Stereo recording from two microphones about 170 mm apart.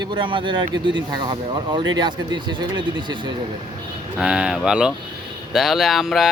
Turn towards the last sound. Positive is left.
turn(degrees=0)  # may be behind; listen again after turning